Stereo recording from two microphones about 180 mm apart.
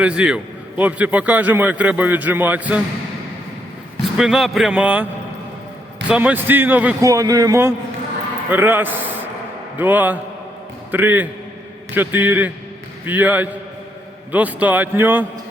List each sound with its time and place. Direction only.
0.0 s a man's voice: 5° right (ahead or behind)
4.2 s a man's voice: centre (ahead or behind)
6.1 s a man's voice: 10° right (ahead or behind)
7.1 s a man's voice: 20° right (ahead or behind)